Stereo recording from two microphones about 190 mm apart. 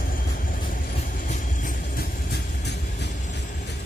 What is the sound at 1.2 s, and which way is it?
Music, 45° left (ahead or behind).